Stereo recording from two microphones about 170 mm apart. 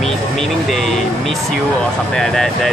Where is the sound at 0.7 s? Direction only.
Centre (ahead or behind).